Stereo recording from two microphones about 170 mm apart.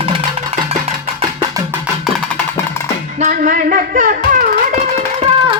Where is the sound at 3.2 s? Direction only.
55° right (ahead or behind).